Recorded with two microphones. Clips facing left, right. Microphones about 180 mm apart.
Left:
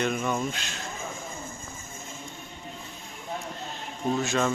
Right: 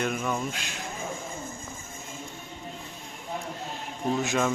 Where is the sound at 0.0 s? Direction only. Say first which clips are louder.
Left 2 dB; centre (ahead or behind).